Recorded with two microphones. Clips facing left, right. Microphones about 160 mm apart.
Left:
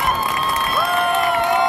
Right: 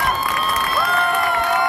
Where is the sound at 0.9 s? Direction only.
20° left (ahead or behind).